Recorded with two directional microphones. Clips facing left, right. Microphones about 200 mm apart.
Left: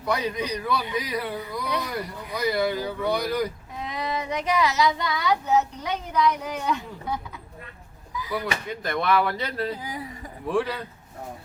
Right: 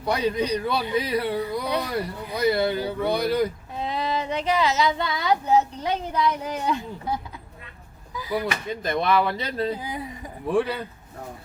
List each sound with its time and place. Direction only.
0.0 s speech: 30° right (ahead or behind)
8.1 s speech: 30° right (ahead or behind); by 10.8 s 15° right (ahead or behind)